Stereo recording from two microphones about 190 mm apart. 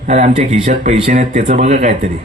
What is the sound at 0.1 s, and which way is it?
A man's voice, 35° right (ahead or behind).